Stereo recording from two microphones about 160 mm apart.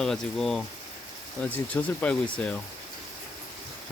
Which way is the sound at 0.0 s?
5° left (ahead or behind).